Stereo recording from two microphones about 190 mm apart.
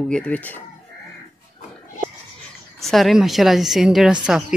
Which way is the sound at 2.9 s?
Centre (ahead or behind).